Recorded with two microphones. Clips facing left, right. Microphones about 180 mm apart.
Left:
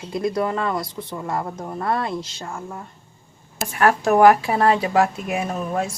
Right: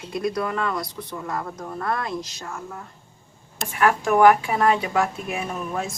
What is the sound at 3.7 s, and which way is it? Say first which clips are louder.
A woman's voice: left 2 dB; 40° left (ahead or behind).